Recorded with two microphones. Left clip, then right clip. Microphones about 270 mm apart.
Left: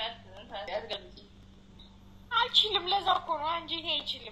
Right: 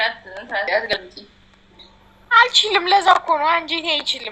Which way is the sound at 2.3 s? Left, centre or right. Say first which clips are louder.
Right 13 dB; right.